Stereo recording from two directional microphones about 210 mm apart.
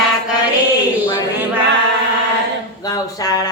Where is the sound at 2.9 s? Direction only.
15° left (ahead or behind).